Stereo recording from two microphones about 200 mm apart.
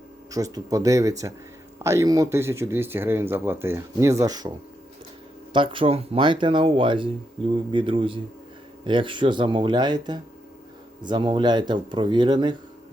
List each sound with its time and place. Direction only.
0.3 s speech: 15° right (ahead or behind)
5.5 s speech: 25° right (ahead or behind)